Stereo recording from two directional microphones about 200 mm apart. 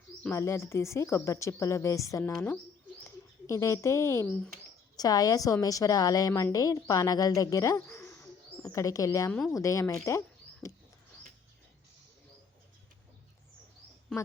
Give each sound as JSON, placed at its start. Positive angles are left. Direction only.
{"t": 0.2, "sound": "a woman's voice", "side_deg": 10}
{"t": 9.3, "sound": "speech", "side_deg": 0}
{"t": 9.6, "sound": "speech", "side_deg": 15}